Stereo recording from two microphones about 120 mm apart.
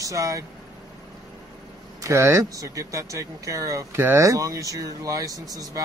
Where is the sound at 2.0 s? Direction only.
20° right (ahead or behind).